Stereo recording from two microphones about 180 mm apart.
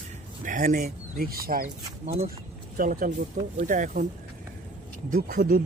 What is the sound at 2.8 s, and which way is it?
Speech, 50° right (ahead or behind).